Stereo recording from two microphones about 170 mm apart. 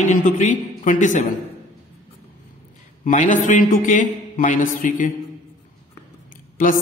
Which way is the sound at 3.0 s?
50° left (ahead or behind).